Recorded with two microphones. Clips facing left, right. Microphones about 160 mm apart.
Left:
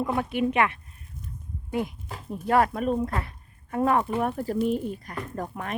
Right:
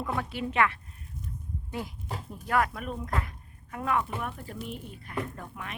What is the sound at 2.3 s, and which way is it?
Speech, 30° left (ahead or behind).